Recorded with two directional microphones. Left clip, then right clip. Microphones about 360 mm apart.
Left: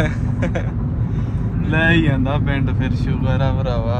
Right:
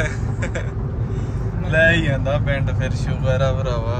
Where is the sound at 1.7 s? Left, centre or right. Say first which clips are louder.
Right 1 dB; centre.